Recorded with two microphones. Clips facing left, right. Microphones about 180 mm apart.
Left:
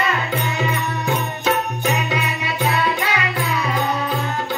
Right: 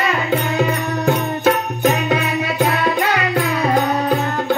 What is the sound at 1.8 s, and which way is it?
Music, 55° right (ahead or behind).